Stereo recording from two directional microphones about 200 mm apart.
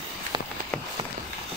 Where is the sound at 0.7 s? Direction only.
5° left (ahead or behind).